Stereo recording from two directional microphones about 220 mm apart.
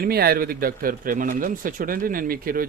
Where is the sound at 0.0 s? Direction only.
45° right (ahead or behind).